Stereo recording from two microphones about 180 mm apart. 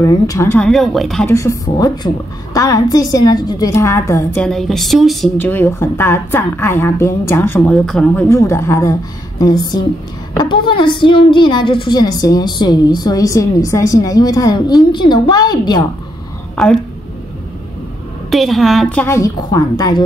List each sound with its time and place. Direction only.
0.0 s a woman's voice: 20° left (ahead or behind)
0.7 s speech: centre (ahead or behind)
1.2 s a woman's voice: 15° left (ahead or behind)
4.5 s speech: centre (ahead or behind)
5.4 s a woman's voice: 10° left (ahead or behind)
16.5 s a woman's voice: 5° left (ahead or behind)
18.3 s a woman's voice: centre (ahead or behind); by 20.0 s 20° left (ahead or behind)